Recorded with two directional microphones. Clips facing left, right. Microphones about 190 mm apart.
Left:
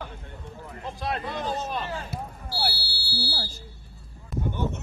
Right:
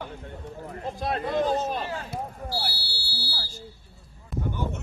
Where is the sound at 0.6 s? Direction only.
45° right (ahead or behind).